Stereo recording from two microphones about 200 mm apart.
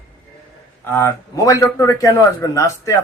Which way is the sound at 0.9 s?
15° left (ahead or behind).